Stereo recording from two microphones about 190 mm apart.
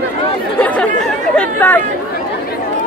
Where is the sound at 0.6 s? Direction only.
10° left (ahead or behind).